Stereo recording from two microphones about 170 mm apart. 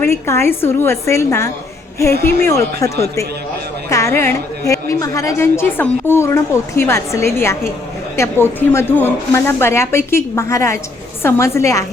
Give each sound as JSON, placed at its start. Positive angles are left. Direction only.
{"t": 0.0, "sound": "a woman's voice", "side_deg": 15}